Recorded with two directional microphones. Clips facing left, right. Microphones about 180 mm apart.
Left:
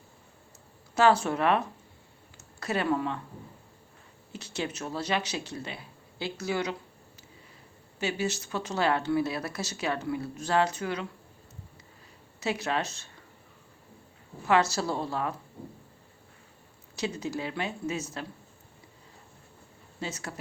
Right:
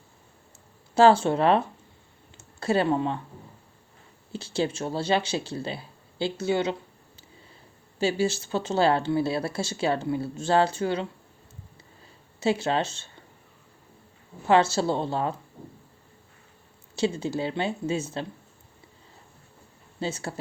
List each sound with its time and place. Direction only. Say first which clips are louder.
0.9 s speech: right 5 dB; 30° right (ahead or behind)
4.3 s speech: right 7 dB; 30° right (ahead or behind)
7.9 s speech: right 6 dB; 30° right (ahead or behind)
12.4 s speech: right 5 dB; 30° right (ahead or behind)
14.4 s speech: right 4 dB; 25° right (ahead or behind)
16.9 s speech: right 6 dB; 30° right (ahead or behind)
20.0 s speech: right 6 dB; 30° right (ahead or behind)